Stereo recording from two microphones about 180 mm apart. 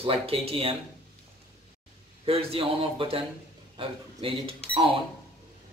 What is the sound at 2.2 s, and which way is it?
A man's voice, 30° right (ahead or behind).